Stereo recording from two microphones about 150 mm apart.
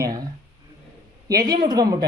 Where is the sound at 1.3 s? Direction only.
25° right (ahead or behind).